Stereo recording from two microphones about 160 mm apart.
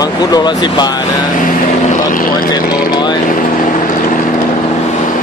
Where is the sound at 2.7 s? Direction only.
65° left (ahead or behind).